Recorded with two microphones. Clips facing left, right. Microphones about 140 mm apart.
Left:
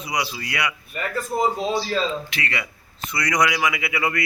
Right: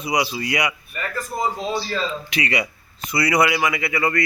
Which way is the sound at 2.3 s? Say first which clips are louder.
Right 5 dB; 15° right (ahead or behind).